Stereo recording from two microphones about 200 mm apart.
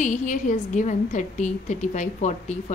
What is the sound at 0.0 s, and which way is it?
A woman's voice, 40° left (ahead or behind).